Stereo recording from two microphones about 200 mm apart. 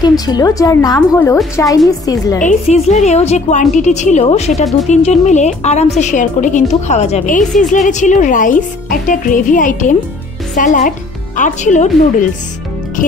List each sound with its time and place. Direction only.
0.0 s a woman's voice: 20° left (ahead or behind)
2.4 s a woman's voice: 35° left (ahead or behind)